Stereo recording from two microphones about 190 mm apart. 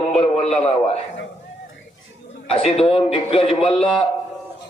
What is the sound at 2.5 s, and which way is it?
A man's voice, 30° left (ahead or behind).